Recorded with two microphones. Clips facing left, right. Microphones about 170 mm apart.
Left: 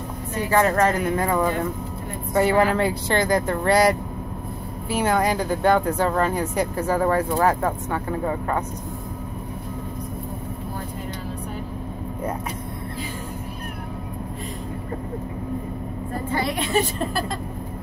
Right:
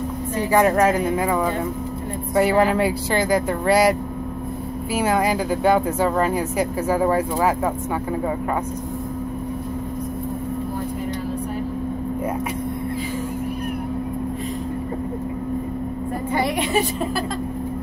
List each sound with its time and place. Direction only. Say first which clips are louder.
0.5 s a woman's voice: right 2 dB; 15° right (ahead or behind)
4.9 s speech: right 1 dB; 5° right (ahead or behind)
16.3 s speech: right 3 dB; 15° right (ahead or behind)